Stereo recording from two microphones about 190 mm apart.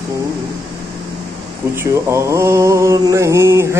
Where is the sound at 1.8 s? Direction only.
15° right (ahead or behind).